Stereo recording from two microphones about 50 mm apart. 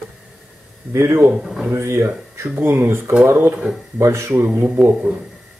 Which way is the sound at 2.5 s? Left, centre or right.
Right.